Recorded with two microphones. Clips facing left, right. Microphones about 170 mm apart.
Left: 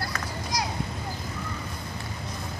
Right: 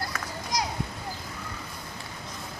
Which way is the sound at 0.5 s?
20° right (ahead or behind).